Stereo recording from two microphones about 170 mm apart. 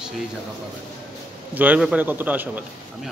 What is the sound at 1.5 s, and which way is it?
A man's voice, 10° right (ahead or behind).